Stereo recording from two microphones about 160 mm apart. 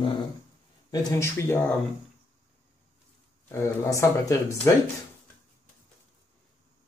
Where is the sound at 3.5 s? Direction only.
15° left (ahead or behind).